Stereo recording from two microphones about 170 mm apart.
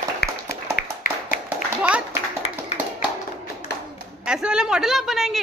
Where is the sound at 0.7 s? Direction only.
50° left (ahead or behind).